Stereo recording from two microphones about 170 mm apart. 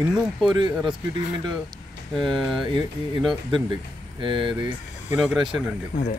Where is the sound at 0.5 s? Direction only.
25° right (ahead or behind).